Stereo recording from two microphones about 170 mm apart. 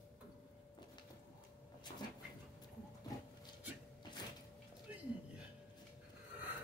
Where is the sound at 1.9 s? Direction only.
35° left (ahead or behind).